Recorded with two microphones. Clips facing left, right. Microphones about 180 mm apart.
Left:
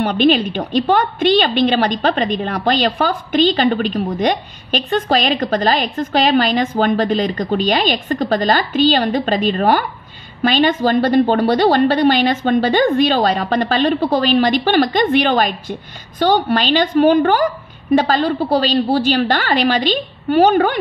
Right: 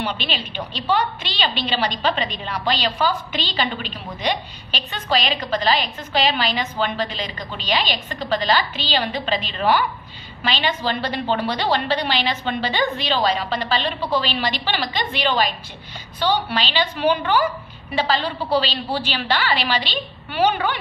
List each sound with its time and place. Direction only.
0.0 s a woman's voice: 50° left (ahead or behind)